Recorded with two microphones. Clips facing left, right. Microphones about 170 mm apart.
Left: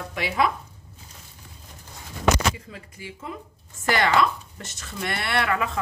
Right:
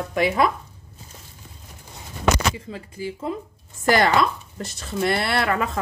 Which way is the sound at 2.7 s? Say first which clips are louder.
Right 9 dB; 35° right (ahead or behind).